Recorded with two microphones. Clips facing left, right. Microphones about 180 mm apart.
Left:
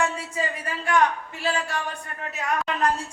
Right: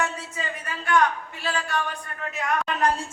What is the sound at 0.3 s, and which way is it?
Speech, 30° left (ahead or behind).